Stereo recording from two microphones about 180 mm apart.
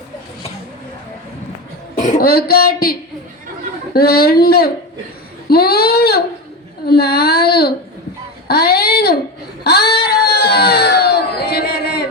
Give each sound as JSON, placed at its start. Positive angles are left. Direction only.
{"t": 2.0, "sound": "speech", "side_deg": 50}
{"t": 3.9, "sound": "speech", "side_deg": 60}
{"t": 8.4, "sound": "a sound", "side_deg": 60}